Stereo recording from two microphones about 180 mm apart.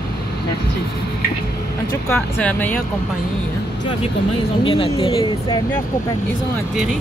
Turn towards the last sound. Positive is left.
turn(degrees=25)  # may be behind; listen again after turning